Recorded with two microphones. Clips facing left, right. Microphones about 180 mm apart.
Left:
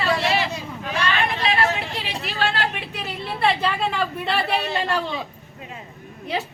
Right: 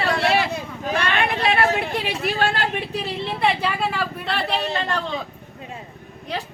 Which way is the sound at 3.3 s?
10° right (ahead or behind).